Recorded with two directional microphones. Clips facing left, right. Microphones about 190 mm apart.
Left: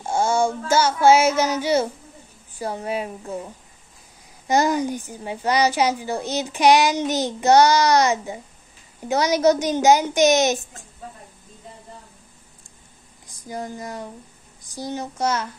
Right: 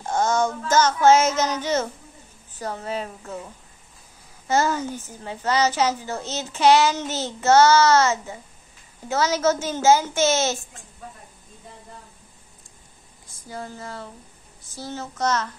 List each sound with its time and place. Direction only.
0.0 s a woman's voice: 10° left (ahead or behind)
13.5 s a woman's voice: 15° left (ahead or behind)